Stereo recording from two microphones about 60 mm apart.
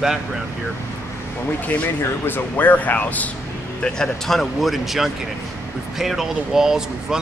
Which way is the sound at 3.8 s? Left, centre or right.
Centre.